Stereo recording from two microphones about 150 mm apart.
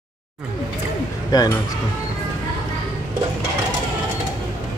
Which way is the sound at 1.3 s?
25° left (ahead or behind).